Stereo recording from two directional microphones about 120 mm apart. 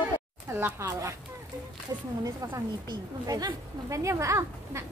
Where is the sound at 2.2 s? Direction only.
35° right (ahead or behind).